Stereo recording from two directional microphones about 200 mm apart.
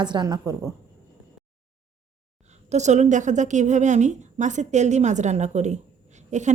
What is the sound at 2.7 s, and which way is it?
A woman's voice, 35° right (ahead or behind).